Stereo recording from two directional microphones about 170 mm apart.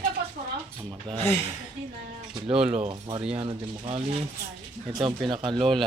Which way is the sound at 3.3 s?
35° right (ahead or behind).